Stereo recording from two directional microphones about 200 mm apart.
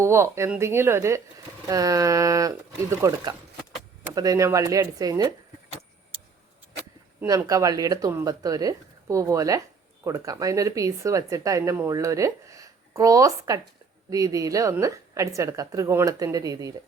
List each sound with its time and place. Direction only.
0.0 s speech: 15° right (ahead or behind)
7.2 s speech: 15° right (ahead or behind)